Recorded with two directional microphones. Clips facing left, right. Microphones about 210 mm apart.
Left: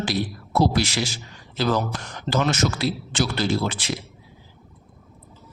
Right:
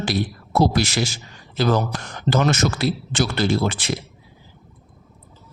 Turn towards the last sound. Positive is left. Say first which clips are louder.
# right 3 dB
turn(degrees=-50)  # may be behind; listen again after turning